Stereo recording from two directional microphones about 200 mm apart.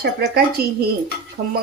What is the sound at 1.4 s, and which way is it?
Cutlery, 35° right (ahead or behind).